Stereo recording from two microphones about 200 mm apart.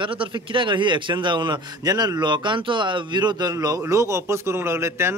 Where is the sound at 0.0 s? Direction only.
25° right (ahead or behind).